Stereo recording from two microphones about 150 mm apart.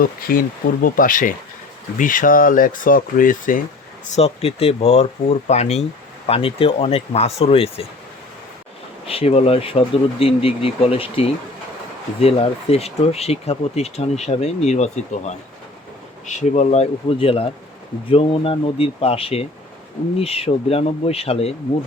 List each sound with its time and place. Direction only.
0.0 s speech: 75° left (ahead or behind)
4.0 s speech: 45° left (ahead or behind)
9.0 s speech: 40° left (ahead or behind)